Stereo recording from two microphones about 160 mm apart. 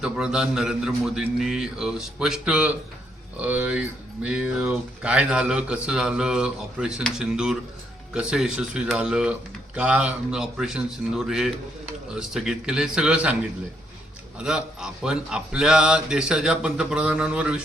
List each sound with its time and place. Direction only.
0.0 s speech: 5° right (ahead or behind)
14.3 s speech: 5° right (ahead or behind)